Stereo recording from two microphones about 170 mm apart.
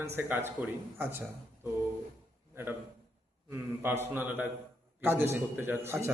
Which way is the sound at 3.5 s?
15° right (ahead or behind).